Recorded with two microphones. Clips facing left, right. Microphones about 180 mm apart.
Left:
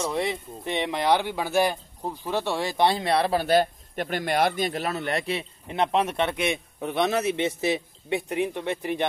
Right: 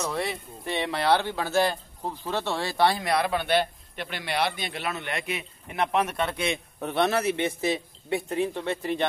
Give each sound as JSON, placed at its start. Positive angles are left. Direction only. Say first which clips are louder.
{"t": 0.0, "sound": "speech", "louder": "left 3 dB", "side_deg": 20}